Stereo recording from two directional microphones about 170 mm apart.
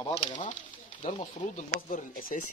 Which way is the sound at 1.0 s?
50° left (ahead or behind).